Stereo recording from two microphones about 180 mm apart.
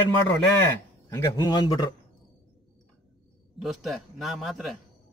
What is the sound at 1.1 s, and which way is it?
Speech, 20° left (ahead or behind).